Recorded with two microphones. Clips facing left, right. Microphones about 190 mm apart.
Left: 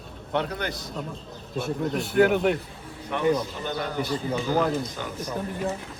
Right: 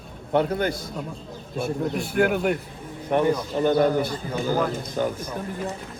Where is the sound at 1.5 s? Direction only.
Centre (ahead or behind).